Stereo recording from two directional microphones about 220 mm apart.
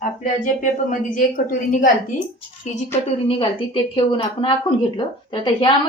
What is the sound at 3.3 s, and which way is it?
Speech, 25° left (ahead or behind).